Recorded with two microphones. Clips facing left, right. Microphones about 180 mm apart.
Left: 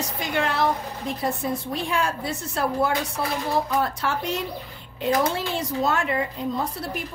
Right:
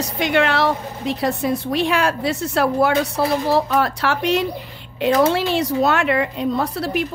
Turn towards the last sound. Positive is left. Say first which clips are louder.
# right 7 dB
turn(degrees=-75)  # may be behind; listen again after turning